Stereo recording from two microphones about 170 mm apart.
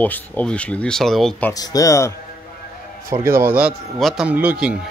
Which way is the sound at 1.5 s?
20° left (ahead or behind).